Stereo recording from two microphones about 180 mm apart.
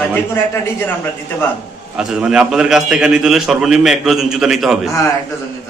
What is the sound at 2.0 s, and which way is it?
A man's voice, 5° right (ahead or behind).